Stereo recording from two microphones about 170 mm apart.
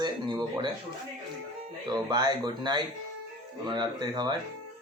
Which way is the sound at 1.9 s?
20° right (ahead or behind).